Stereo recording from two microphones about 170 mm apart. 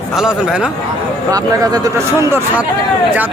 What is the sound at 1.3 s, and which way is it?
Speech, 20° right (ahead or behind).